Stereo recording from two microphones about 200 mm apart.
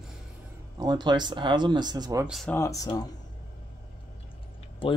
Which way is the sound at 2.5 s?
15° left (ahead or behind).